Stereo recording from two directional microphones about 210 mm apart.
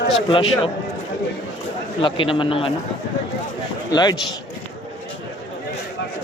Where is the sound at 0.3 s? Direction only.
25° left (ahead or behind).